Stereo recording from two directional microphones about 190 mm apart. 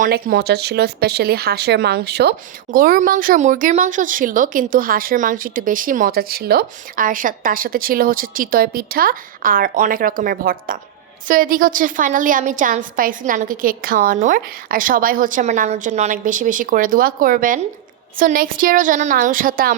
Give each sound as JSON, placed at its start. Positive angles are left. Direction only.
{"t": 0.0, "sound": "speech", "side_deg": -55}
{"t": 2.7, "sound": "speech", "side_deg": -50}